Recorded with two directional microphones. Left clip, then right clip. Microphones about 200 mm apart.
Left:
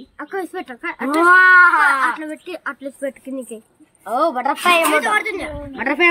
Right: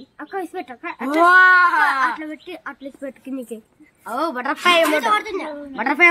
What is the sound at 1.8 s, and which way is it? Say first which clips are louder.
Speech: left 2 dB; 10° left (ahead or behind).